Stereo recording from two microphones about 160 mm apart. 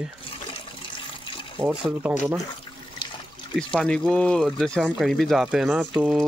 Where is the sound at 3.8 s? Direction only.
5° left (ahead or behind).